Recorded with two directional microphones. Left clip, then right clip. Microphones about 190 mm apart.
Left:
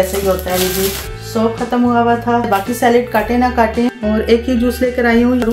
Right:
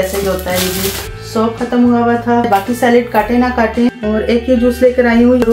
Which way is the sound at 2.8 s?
45° left (ahead or behind).